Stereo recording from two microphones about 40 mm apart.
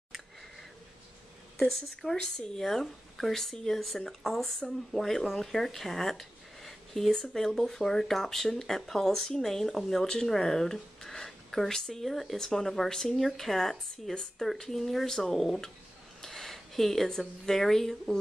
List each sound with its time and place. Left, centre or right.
1.6 s speech: centre
2.1 s speech: left
2.6 s speech: centre